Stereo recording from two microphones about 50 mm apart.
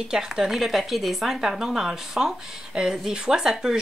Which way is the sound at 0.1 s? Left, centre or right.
Centre.